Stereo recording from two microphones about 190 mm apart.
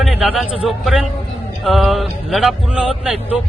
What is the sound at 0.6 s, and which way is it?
A man's voice, centre (ahead or behind).